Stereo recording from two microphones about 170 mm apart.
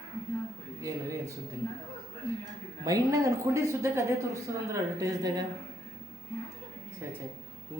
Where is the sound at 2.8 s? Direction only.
20° right (ahead or behind).